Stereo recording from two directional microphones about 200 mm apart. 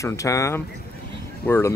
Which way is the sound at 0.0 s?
15° left (ahead or behind).